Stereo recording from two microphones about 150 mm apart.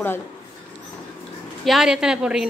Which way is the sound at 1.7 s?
5° right (ahead or behind).